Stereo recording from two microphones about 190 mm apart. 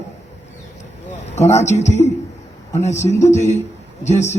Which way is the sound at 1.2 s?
35° left (ahead or behind).